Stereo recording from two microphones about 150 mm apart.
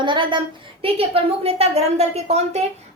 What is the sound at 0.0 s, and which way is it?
A woman's voice, 30° right (ahead or behind).